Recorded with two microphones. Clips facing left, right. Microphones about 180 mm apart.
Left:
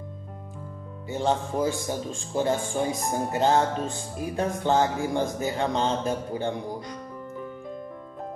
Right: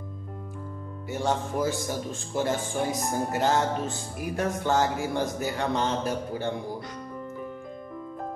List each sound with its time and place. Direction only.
1.0 s music: 20° left (ahead or behind)
5.0 s a man's voice: 20° left (ahead or behind)